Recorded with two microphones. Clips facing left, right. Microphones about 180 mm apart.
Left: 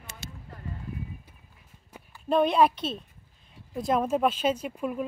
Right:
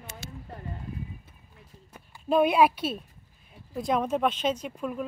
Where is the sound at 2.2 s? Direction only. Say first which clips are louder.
Right 1 dB; 5° right (ahead or behind).